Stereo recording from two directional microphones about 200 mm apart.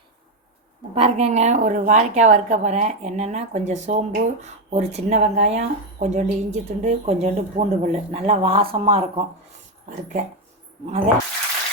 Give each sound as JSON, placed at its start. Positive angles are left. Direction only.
{"t": 0.9, "sound": "speech", "side_deg": -30}
{"t": 10.8, "sound": "speech", "side_deg": -35}